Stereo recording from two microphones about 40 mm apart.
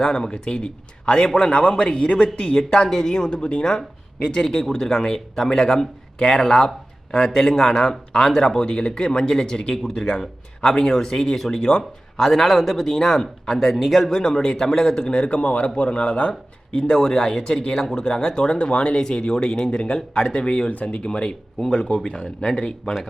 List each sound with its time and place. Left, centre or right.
0.0 s speech: centre
2.8 s a man's voice: centre
14.1 s a man's voice: centre
15.1 s speech: left
16.9 s speech: centre
20.0 s a man's voice: centre
20.7 s speech: left
21.9 s a man's voice: centre